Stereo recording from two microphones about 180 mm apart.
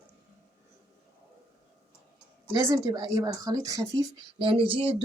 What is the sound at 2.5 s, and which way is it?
Speech, 20° right (ahead or behind).